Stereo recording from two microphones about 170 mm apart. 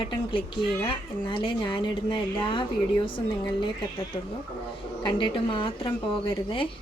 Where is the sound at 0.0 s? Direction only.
30° left (ahead or behind).